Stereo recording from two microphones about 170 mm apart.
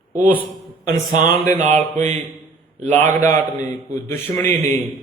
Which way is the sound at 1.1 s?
45° right (ahead or behind).